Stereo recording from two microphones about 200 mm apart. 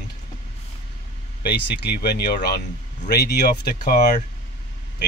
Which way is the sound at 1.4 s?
55° left (ahead or behind).